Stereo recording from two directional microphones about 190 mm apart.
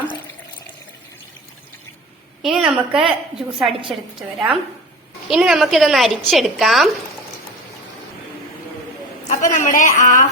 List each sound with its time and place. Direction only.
2.4 s a woman's voice: 5° right (ahead or behind)
9.3 s a woman's voice: 40° left (ahead or behind)